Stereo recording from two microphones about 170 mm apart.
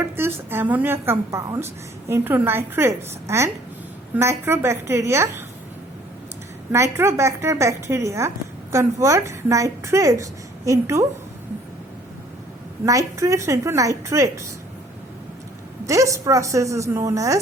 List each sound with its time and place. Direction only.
0.2 s a woman's voice: 10° right (ahead or behind)
6.7 s a woman's voice: 15° right (ahead or behind)
12.8 s a woman's voice: 20° right (ahead or behind)
15.9 s a woman's voice: 20° right (ahead or behind)